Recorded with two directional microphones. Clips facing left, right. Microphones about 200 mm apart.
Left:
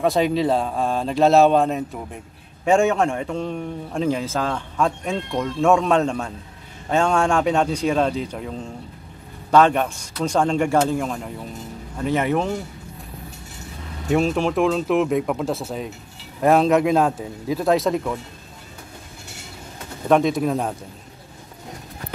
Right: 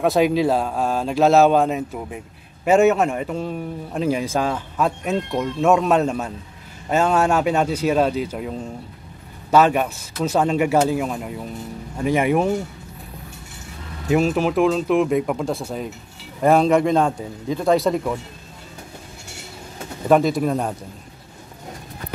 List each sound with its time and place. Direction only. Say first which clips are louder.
0.0 s a man's voice: right 2 dB; centre (ahead or behind)
14.0 s a man's voice: right 1 dB; 5° right (ahead or behind)
20.1 s a man's voice: right 1 dB; centre (ahead or behind)